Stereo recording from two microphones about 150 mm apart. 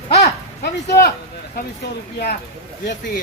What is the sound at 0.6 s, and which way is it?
Speech, 90° left.